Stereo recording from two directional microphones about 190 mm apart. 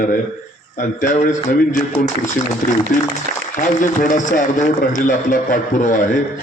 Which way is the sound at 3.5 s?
45° left (ahead or behind).